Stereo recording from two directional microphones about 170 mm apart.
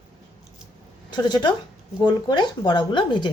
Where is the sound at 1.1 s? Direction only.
25° left (ahead or behind).